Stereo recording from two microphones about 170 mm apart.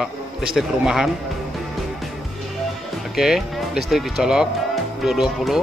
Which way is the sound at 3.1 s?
Centre (ahead or behind).